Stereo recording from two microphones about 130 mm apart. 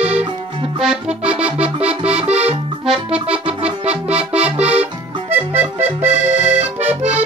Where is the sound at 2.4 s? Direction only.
10° right (ahead or behind).